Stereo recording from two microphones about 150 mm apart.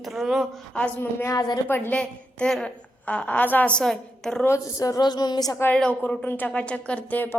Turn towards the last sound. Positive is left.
turn(degrees=10)  # may be behind; listen again after turning